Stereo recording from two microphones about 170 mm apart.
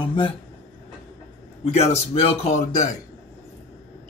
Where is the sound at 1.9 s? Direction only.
35° left (ahead or behind).